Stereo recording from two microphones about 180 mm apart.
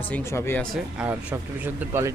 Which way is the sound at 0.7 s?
5° right (ahead or behind).